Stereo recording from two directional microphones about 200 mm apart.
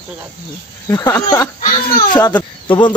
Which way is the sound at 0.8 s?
10° left (ahead or behind).